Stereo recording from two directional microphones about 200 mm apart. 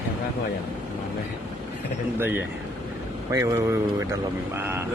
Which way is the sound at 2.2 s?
10° right (ahead or behind).